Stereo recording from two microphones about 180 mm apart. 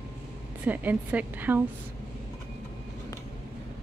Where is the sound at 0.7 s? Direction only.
10° right (ahead or behind).